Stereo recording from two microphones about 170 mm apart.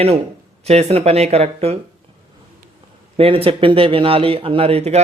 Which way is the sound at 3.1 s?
35° right (ahead or behind).